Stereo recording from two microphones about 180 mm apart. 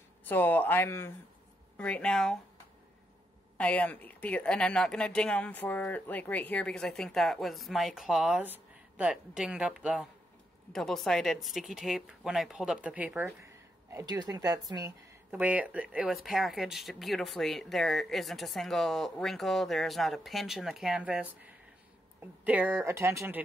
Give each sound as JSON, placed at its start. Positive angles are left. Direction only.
{"t": 0.2, "sound": "speech", "side_deg": 10}
{"t": 3.5, "sound": "speech", "side_deg": 5}
{"t": 22.4, "sound": "speech", "side_deg": -10}